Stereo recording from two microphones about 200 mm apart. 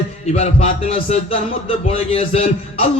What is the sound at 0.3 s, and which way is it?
Music, 30° left (ahead or behind).